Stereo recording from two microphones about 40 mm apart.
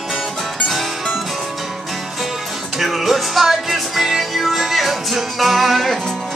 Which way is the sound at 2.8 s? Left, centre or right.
Centre.